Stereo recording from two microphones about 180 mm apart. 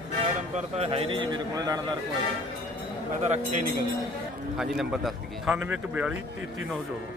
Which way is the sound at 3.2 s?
40° right (ahead or behind).